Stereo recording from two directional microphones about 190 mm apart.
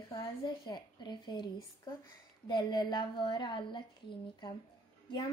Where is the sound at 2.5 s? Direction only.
25° left (ahead or behind).